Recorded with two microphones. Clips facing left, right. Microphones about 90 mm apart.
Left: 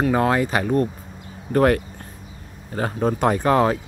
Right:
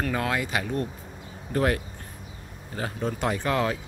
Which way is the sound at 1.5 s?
55° left (ahead or behind).